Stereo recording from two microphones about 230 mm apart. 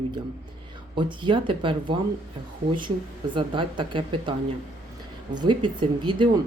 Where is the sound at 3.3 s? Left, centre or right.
Right.